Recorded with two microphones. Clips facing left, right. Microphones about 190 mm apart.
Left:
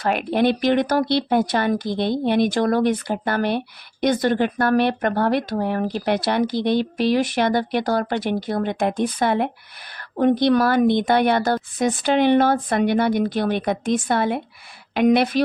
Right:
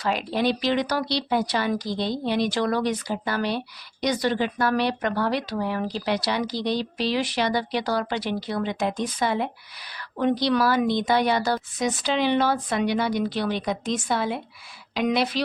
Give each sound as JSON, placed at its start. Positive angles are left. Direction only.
{"t": 0.0, "sound": "a woman's voice", "side_deg": 60}